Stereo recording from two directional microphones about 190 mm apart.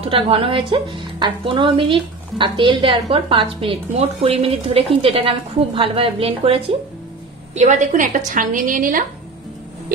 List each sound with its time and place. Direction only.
0.0 s a woman's voice: 30° right (ahead or behind); by 9.0 s 45° right (ahead or behind)